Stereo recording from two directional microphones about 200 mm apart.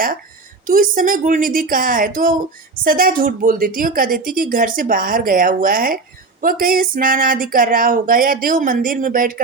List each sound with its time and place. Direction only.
0.7 s a woman's voice: 45° right (ahead or behind)